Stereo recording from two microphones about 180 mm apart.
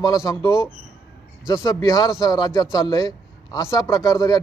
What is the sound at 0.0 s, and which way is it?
Speech, 20° left (ahead or behind).